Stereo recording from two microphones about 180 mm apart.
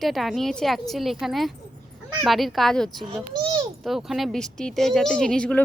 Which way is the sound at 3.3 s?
25° right (ahead or behind).